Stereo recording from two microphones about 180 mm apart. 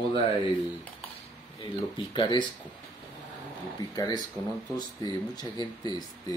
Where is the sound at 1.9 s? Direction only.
25° left (ahead or behind).